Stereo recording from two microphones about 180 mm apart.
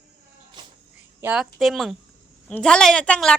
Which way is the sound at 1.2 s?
5° right (ahead or behind).